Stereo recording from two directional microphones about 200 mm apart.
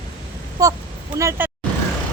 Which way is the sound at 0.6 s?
15° right (ahead or behind).